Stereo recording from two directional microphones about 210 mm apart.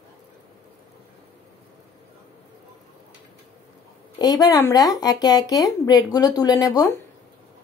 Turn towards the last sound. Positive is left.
turn(degrees=15)  # may be behind; listen again after turning